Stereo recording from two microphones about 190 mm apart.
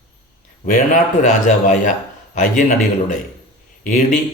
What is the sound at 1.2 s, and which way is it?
A man's voice, 40° left (ahead or behind).